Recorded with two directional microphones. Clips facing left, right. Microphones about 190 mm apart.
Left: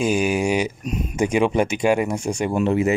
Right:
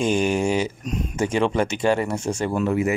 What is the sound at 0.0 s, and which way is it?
Speech, 10° left (ahead or behind).